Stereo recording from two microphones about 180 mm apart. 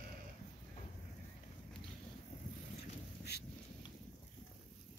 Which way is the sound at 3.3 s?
65° left (ahead or behind).